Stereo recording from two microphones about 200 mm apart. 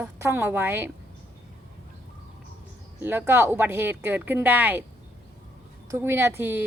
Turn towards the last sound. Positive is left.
turn(degrees=-10)  # may be behind; listen again after turning